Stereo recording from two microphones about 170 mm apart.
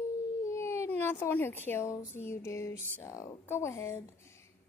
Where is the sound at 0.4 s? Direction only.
15° left (ahead or behind).